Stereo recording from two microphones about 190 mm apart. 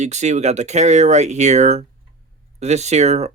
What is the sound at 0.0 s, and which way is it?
Speech, 35° right (ahead or behind).